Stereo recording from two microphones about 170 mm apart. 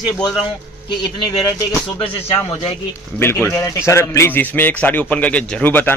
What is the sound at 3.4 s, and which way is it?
A man's voice, 15° left (ahead or behind).